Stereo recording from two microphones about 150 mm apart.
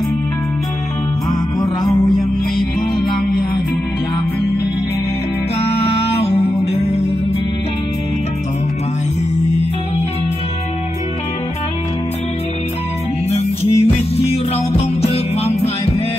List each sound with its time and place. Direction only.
5.8 s music: 45° left (ahead or behind)
13.3 s music: 45° left (ahead or behind)